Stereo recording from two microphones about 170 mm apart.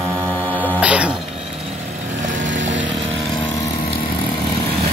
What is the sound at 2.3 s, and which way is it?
Vehicle, 90° right.